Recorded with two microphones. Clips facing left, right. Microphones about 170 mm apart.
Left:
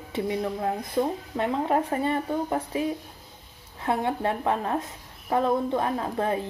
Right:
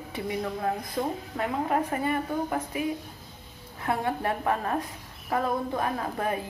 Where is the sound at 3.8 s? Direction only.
20° left (ahead or behind).